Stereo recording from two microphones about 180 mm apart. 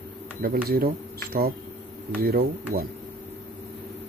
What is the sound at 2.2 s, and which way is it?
Speech, 60° right (ahead or behind).